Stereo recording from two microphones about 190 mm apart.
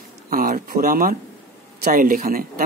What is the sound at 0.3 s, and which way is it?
Speech, 50° right (ahead or behind).